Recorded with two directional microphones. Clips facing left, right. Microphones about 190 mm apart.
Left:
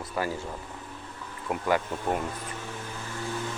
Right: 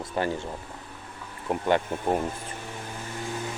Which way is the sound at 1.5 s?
25° right (ahead or behind).